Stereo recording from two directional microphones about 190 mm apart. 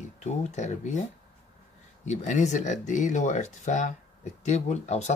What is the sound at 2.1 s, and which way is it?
Speech, 40° left (ahead or behind).